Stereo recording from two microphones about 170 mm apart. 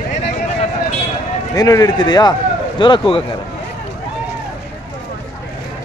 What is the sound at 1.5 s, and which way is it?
A man's voice, 20° left (ahead or behind).